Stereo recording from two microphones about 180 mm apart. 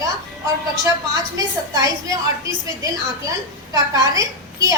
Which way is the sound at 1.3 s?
20° right (ahead or behind).